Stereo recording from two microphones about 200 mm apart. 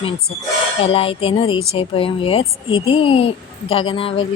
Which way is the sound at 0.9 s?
25° left (ahead or behind).